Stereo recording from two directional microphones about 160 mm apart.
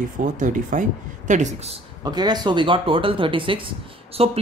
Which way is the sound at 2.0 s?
25° right (ahead or behind).